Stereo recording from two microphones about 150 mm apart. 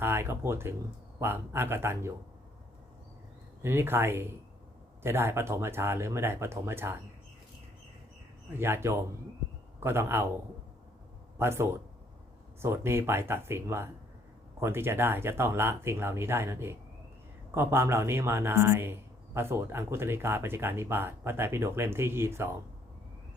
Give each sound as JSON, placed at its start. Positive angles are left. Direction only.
{"t": 0.0, "sound": "speech", "side_deg": -15}
{"t": 3.6, "sound": "speech", "side_deg": -15}
{"t": 8.5, "sound": "speech", "side_deg": -15}
{"t": 11.3, "sound": "speech", "side_deg": -15}